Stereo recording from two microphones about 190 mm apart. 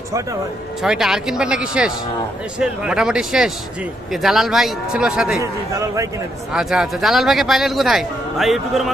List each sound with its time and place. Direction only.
0.8 s speech: centre (ahead or behind)
5.4 s a man's voice: 15° right (ahead or behind)
6.5 s speech: 5° right (ahead or behind)